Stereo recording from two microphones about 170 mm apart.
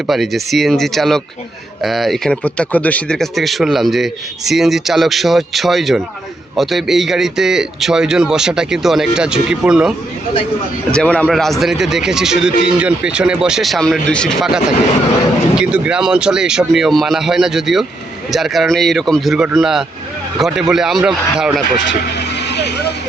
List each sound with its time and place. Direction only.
0.1 s speech: centre (ahead or behind)
10.9 s speech: 5° left (ahead or behind)
22.4 s vehicle: 80° left